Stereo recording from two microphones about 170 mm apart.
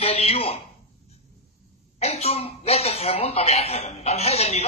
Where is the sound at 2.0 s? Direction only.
40° left (ahead or behind).